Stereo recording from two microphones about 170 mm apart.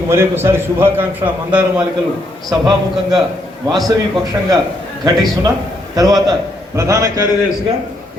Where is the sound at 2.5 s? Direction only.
25° right (ahead or behind).